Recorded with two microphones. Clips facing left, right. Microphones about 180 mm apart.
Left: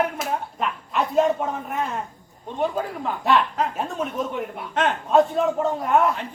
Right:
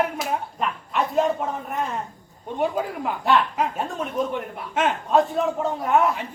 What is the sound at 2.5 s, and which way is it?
Speech, 10° right (ahead or behind).